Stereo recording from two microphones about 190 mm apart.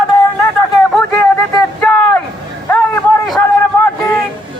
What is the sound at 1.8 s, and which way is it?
Vehicle, 5° left (ahead or behind).